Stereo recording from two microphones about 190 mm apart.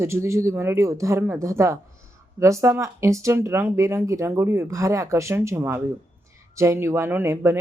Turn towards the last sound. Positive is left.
turn(degrees=-15)  # may be behind; listen again after turning